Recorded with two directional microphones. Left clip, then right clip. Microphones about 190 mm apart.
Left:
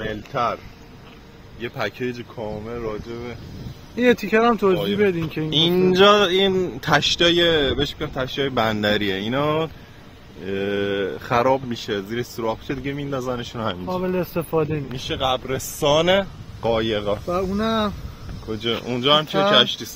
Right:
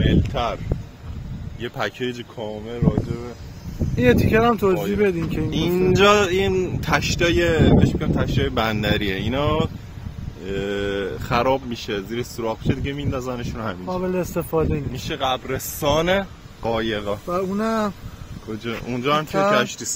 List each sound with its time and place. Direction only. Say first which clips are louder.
0.0 s speech: right 1 dB; 20° right (ahead or behind)
1.6 s speech: even; 20° right (ahead or behind)
3.1 s a man's voice: even; 10° left (ahead or behind)
5.9 s a man's voice: left 2 dB; 30° left (ahead or behind)
10.7 s speech: left 2 dB; 25° left (ahead or behind)
11.9 s speech: left 1 dB; 30° right (ahead or behind)
12.2 s a man's voice: left 1 dB; 30° left (ahead or behind)
13.9 s a man's voice: right 1 dB; 5° right (ahead or behind)
15.0 s speech: left 1 dB; 55° left (ahead or behind)
17.3 s a man's voice: right 2 dB; centre (ahead or behind)
18.5 s speech: left 5 dB; 50° left (ahead or behind)
18.9 s a man's voice: left 2 dB; 40° left (ahead or behind)